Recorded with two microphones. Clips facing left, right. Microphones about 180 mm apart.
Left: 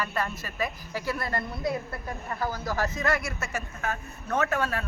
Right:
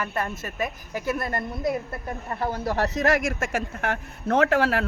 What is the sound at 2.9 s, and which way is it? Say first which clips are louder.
Speech: right 6 dB; 85° right.